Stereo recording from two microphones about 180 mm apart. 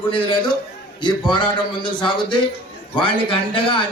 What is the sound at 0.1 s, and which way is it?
A man's voice, 25° left (ahead or behind).